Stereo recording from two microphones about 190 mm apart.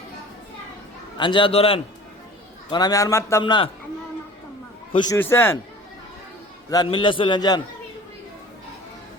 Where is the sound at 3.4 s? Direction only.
25° left (ahead or behind).